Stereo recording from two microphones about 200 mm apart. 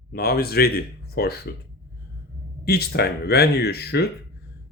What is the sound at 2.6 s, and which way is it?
Speech, 55° left (ahead or behind).